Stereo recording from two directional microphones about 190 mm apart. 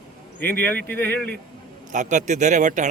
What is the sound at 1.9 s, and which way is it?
Speech, 40° right (ahead or behind).